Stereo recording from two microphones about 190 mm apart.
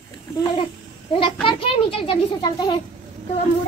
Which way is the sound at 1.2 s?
25° left (ahead or behind).